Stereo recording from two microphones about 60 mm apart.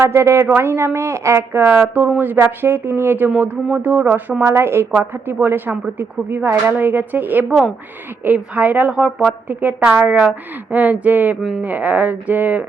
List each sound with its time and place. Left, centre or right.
0.0 s a woman's voice: right
2.1 s speech: right
4.4 s a woman's voice: right
7.4 s speech: centre
8.2 s a woman's voice: right
8.9 s speech: centre
9.5 s a woman's voice: right